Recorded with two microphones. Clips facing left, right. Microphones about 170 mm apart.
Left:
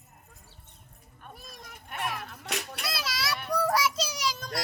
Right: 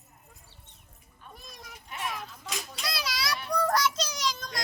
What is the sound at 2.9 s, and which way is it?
Children playing, centre (ahead or behind).